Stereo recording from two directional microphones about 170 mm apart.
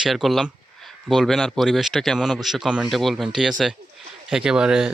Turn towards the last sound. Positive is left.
turn(degrees=-5)  # may be behind; listen again after turning